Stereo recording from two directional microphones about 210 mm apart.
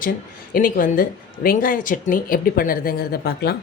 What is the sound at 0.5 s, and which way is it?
A woman's voice, 40° left (ahead or behind).